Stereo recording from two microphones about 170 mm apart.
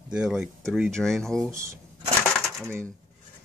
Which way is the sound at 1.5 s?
15° right (ahead or behind).